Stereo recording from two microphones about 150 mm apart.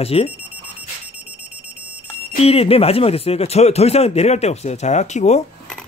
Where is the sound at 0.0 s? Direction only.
40° left (ahead or behind).